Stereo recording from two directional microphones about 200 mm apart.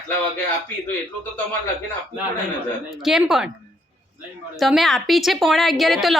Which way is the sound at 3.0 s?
Centre (ahead or behind).